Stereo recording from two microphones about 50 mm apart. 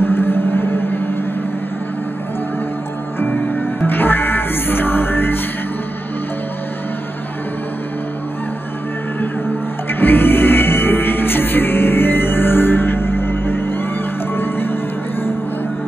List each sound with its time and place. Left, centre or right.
0.0 s a sound: left
3.8 s music: left
9.8 s music: left